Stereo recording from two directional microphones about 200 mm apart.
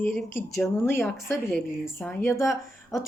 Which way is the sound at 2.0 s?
10° left (ahead or behind).